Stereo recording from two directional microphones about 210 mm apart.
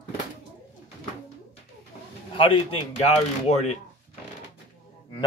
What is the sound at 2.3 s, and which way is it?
Speech, 25° left (ahead or behind).